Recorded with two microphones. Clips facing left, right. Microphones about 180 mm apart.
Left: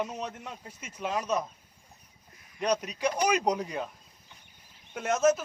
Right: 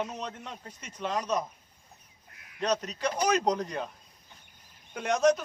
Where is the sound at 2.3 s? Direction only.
70° right (ahead or behind).